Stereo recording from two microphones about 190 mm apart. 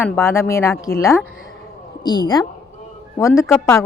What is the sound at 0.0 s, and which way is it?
A woman's voice, 15° left (ahead or behind).